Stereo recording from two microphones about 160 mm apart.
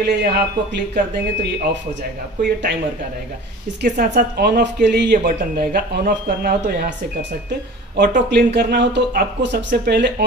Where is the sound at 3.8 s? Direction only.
85° right.